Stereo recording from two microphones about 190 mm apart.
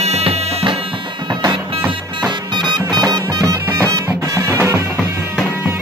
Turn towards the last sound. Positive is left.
turn(degrees=-15)  # may be behind; listen again after turning